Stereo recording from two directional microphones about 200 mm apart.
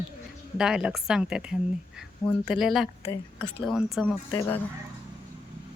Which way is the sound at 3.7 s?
Centre (ahead or behind).